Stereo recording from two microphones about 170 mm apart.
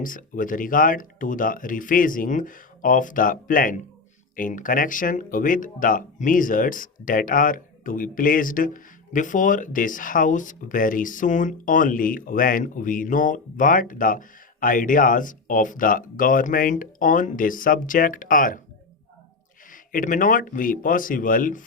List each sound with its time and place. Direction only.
0.0 s speech: 50° left (ahead or behind)
19.7 s speech: 55° left (ahead or behind)